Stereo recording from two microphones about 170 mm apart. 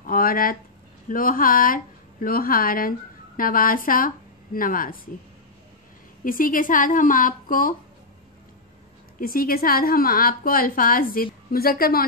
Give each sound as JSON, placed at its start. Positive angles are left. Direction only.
{"t": 0.0, "sound": "a woman's voice", "side_deg": 55}
{"t": 6.2, "sound": "a woman's voice", "side_deg": 55}
{"t": 9.2, "sound": "a woman's voice", "side_deg": 60}